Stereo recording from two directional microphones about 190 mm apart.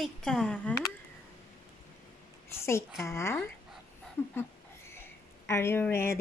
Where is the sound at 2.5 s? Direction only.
15° left (ahead or behind).